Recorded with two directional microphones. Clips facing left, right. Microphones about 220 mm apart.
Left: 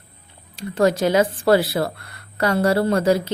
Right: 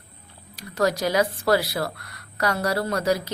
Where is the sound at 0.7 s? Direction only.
30° left (ahead or behind).